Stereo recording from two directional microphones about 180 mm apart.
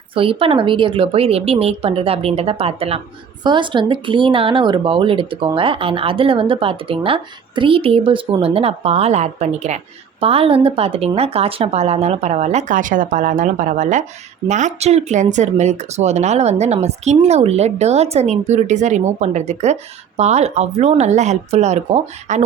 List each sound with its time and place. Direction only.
0.1 s speech: 30° right (ahead or behind)